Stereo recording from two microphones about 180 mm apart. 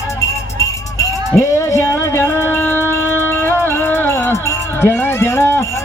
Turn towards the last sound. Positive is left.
turn(degrees=15)  # may be behind; listen again after turning